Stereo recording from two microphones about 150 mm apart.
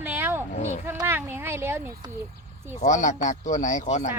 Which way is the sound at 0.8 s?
15° right (ahead or behind).